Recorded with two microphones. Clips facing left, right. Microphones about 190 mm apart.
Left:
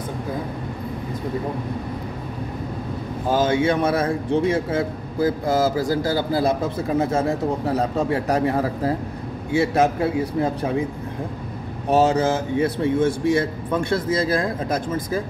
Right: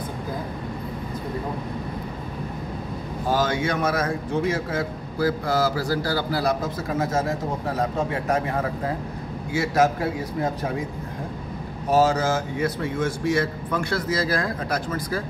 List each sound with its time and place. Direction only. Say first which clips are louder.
3.4 s a man's voice: left 5 dB; 25° left (ahead or behind)
12.0 s a man's voice: left 2 dB; 25° left (ahead or behind)